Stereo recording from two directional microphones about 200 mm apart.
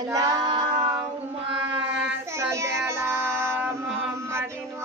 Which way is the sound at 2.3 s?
15° right (ahead or behind).